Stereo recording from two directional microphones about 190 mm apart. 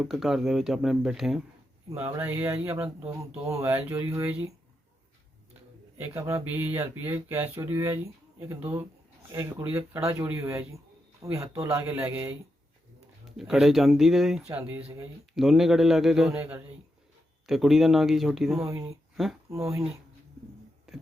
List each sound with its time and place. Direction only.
0.0 s speech: centre (ahead or behind)
1.9 s speech: 15° right (ahead or behind)
6.0 s speech: 15° right (ahead or behind)
13.3 s speech: centre (ahead or behind)
18.6 s speech: 15° right (ahead or behind)
19.1 s speech: centre (ahead or behind)
19.5 s speech: 15° right (ahead or behind)
20.9 s music: centre (ahead or behind)